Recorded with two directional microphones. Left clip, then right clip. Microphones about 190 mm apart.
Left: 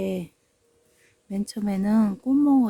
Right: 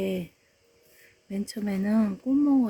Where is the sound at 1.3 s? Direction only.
40° left (ahead or behind).